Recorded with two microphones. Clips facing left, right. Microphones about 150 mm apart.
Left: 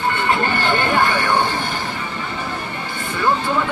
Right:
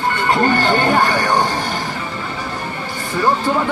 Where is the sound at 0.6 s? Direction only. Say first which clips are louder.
Right 3 dB; 35° right (ahead or behind).